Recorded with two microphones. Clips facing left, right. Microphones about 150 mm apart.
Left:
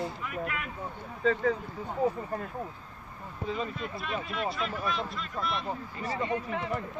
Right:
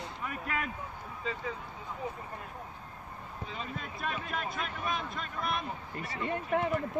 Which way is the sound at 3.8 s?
45° right (ahead or behind).